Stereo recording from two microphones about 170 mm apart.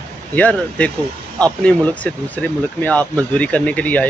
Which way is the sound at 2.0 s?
10° left (ahead or behind).